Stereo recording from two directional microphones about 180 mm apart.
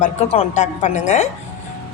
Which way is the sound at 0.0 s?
35° left (ahead or behind).